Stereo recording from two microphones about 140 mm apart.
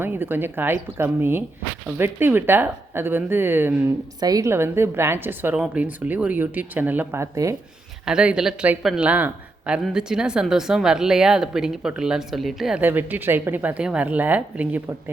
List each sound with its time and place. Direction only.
0.0 s speech: 15° right (ahead or behind)
4.2 s speech: 25° right (ahead or behind)
8.0 s speech: 5° right (ahead or behind)
12.8 s speech: 15° right (ahead or behind)